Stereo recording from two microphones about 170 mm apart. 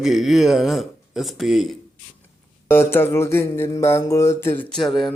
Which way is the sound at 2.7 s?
15° left (ahead or behind).